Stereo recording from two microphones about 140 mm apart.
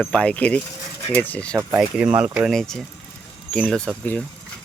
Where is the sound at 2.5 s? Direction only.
5° left (ahead or behind).